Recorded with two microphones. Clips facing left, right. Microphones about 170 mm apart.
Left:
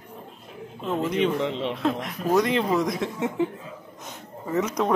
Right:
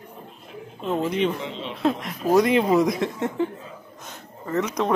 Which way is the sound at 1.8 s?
5° right (ahead or behind).